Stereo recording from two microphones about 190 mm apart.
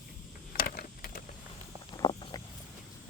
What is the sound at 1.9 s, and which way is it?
Walk, 25° left (ahead or behind).